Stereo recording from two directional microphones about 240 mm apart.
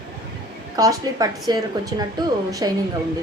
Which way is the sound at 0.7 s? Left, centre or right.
Centre.